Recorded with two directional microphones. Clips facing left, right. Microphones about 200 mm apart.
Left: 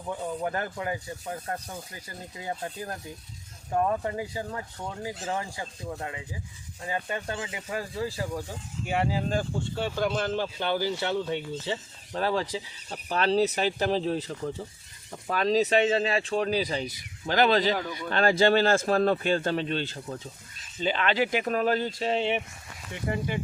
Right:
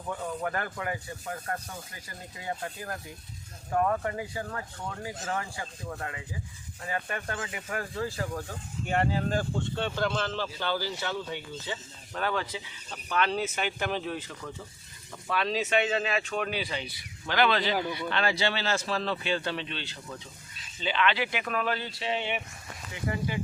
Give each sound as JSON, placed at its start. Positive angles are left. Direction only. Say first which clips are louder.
{"t": 0.1, "sound": "speech", "louder": "left 2 dB", "side_deg": 20}